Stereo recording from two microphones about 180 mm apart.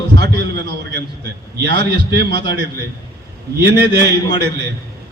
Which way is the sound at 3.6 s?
65° right (ahead or behind).